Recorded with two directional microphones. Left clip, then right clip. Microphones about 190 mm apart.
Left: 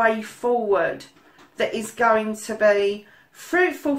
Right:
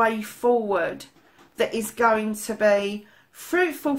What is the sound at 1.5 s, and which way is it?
Speech, 45° right (ahead or behind).